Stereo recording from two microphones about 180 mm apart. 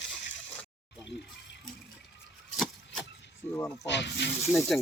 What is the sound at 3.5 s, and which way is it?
Speech, 10° left (ahead or behind).